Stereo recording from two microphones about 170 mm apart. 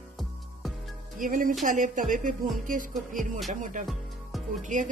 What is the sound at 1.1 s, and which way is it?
Speech, 50° right (ahead or behind).